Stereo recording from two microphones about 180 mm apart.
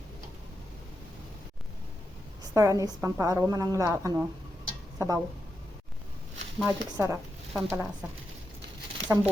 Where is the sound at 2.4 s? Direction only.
20° right (ahead or behind).